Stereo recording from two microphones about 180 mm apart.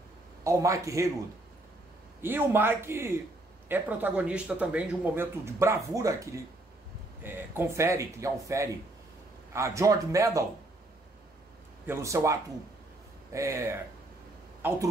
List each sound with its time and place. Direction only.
0.4 s speech: 15° right (ahead or behind)
2.2 s speech: 10° right (ahead or behind)
11.8 s speech: 15° right (ahead or behind)